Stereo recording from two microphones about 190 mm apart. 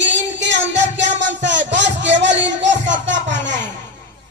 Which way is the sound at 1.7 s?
70° right (ahead or behind).